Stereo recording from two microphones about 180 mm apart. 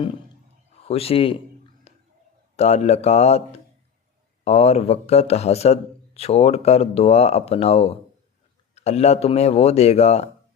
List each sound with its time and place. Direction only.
0.9 s speech: 35° left (ahead or behind)
1.9 s a sound: 35° left (ahead or behind)
2.6 s speech: 35° left (ahead or behind)